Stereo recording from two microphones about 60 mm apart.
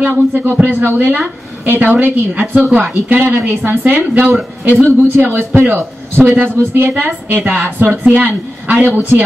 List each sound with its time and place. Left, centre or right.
0.0 s a woman's voice: right